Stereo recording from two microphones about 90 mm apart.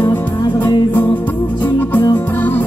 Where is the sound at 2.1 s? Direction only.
20° left (ahead or behind).